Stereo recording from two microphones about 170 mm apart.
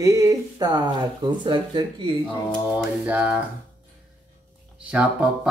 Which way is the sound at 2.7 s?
10° right (ahead or behind).